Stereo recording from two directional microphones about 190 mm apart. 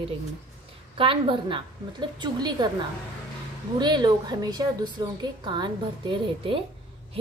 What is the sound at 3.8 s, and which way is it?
Speech, 25° right (ahead or behind).